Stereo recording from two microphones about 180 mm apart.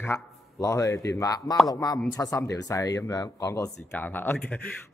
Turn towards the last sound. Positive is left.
turn(degrees=10)  # may be behind; listen again after turning